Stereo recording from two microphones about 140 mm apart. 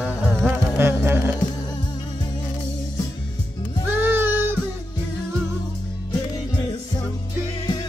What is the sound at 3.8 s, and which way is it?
Music, 15° right (ahead or behind).